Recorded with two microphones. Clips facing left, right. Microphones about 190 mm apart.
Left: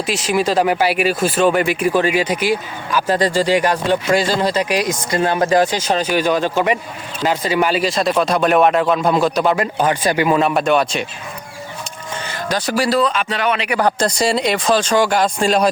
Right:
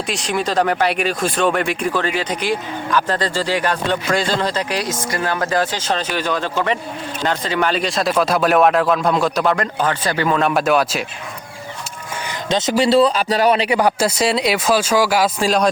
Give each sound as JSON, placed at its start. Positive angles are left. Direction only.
{"t": 0.1, "sound": "speech", "side_deg": 5}
{"t": 9.7, "sound": "speech", "side_deg": 15}
{"t": 10.4, "sound": "speech", "side_deg": 0}
{"t": 12.2, "sound": "speech", "side_deg": -20}
{"t": 13.7, "sound": "speech", "side_deg": -10}